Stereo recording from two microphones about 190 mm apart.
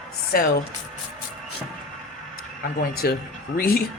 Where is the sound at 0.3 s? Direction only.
55° left (ahead or behind).